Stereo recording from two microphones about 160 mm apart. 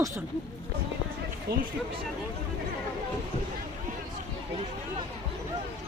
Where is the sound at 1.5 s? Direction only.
80° right.